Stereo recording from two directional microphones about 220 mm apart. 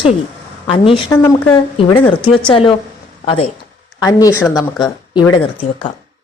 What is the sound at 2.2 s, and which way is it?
Speech, 5° left (ahead or behind).